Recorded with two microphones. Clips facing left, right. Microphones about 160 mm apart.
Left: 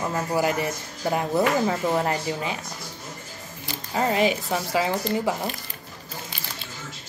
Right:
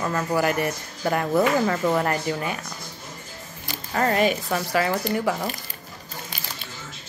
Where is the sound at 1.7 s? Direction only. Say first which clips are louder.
Right 1 dB; 10° left (ahead or behind).